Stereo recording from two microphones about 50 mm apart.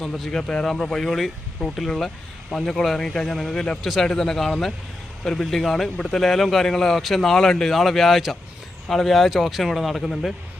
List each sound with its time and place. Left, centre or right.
0.3 s speech: centre